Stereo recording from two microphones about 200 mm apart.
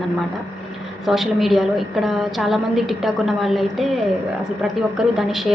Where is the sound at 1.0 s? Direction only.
Centre (ahead or behind).